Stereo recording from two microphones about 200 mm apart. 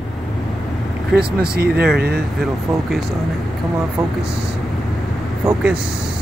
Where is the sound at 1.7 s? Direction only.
5° right (ahead or behind).